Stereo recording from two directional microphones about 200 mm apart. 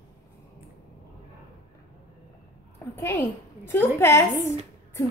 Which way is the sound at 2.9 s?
10° left (ahead or behind).